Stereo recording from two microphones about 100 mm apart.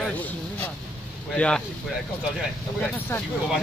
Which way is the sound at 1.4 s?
10° left (ahead or behind).